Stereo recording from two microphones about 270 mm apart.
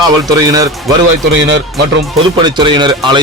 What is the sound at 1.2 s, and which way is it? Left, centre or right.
Speech, right.